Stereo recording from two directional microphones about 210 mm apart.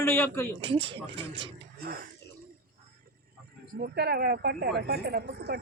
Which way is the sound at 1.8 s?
45° right (ahead or behind).